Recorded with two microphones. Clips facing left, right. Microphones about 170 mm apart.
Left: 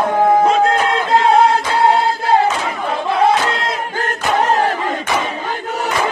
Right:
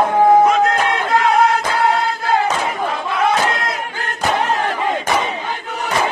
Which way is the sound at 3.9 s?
45° left (ahead or behind).